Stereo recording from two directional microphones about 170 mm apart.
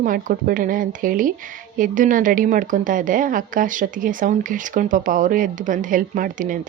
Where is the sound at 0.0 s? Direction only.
50° right (ahead or behind).